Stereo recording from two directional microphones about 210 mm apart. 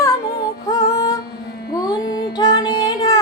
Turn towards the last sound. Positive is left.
turn(degrees=20)  # may be behind; listen again after turning